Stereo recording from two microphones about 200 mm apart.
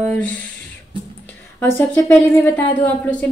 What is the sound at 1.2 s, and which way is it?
Speech, 10° left (ahead or behind).